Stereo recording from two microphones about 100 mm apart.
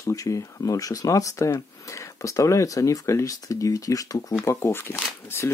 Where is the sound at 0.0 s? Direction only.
35° left (ahead or behind).